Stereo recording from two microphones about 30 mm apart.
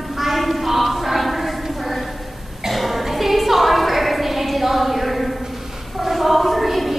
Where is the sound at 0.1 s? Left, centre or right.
Centre.